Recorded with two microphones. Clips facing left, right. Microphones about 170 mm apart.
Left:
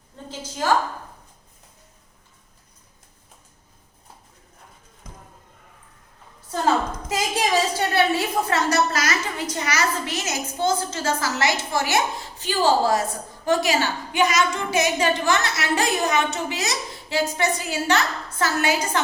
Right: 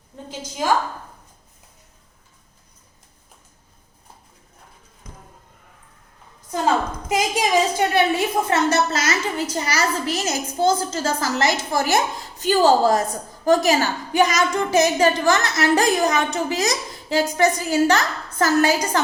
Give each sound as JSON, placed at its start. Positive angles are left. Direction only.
{"t": 0.3, "sound": "a woman's voice", "side_deg": -10}
{"t": 7.1, "sound": "a woman's voice", "side_deg": -15}